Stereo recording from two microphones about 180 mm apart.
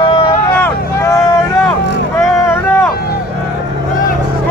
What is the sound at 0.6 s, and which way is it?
Vehicle, 15° left (ahead or behind).